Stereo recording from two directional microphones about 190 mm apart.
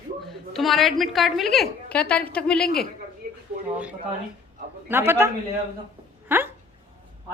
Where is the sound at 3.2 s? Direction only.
50° right (ahead or behind).